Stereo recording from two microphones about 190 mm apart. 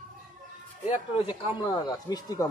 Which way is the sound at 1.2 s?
25° left (ahead or behind).